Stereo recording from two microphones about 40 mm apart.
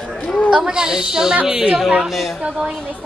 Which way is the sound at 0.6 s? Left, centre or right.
Centre.